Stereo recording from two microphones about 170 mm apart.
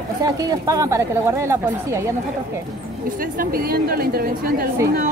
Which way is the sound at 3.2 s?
60° right (ahead or behind).